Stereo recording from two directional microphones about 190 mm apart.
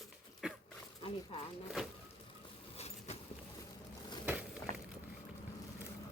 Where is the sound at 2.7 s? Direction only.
35° left (ahead or behind).